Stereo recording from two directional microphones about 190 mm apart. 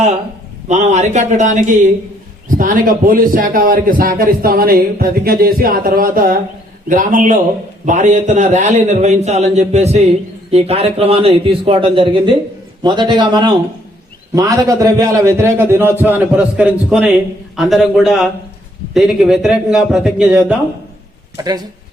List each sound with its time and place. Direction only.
0.7 s a man's voice: 35° right (ahead or behind); by 20.6 s 5° right (ahead or behind)
21.3 s speech: 20° right (ahead or behind)